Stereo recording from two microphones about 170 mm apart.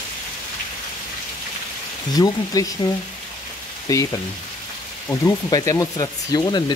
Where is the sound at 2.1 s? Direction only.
20° left (ahead or behind).